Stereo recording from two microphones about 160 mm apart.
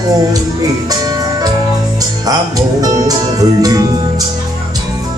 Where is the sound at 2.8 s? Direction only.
25° right (ahead or behind).